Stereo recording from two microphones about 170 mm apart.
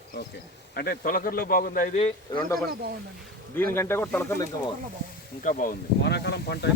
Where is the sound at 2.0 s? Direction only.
30° left (ahead or behind).